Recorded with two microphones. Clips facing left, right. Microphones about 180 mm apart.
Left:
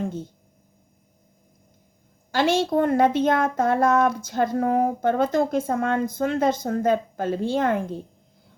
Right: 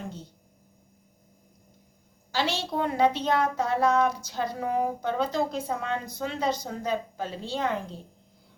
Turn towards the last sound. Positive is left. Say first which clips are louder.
# left 7 dB
turn(degrees=50)  # may be behind; listen again after turning